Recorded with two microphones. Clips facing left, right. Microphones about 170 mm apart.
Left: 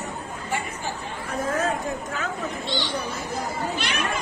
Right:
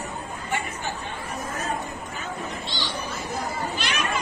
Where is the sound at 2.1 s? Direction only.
75° left (ahead or behind).